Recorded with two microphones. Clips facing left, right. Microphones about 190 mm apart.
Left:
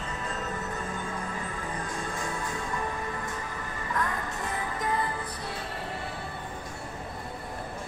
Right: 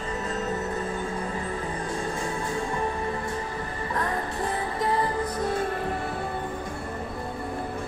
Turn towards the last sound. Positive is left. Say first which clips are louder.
# right 8 dB
turn(degrees=-50)  # may be behind; listen again after turning